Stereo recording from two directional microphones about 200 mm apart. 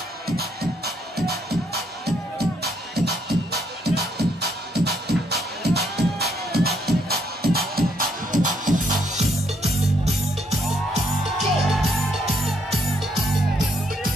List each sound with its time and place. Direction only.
0.4 s music: 50° right (ahead or behind)
10.9 s music: centre (ahead or behind)